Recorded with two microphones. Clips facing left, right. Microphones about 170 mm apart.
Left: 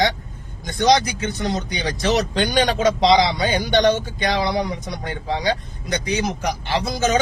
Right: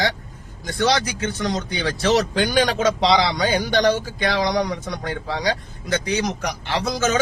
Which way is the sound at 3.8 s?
25° left (ahead or behind).